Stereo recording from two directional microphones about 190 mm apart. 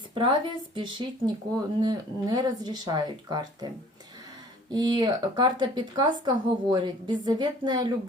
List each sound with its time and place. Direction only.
0.1 s speech: 25° right (ahead or behind)
4.7 s speech: 20° right (ahead or behind)